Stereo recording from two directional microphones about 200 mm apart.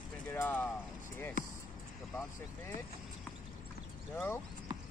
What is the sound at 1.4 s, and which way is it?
Speech, 40° left (ahead or behind).